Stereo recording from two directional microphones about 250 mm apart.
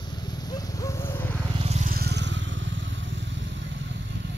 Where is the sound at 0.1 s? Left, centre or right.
Centre.